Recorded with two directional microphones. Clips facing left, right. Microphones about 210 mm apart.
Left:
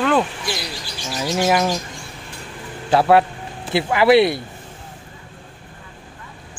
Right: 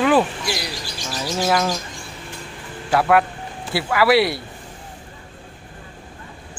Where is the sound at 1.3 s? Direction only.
15° left (ahead or behind).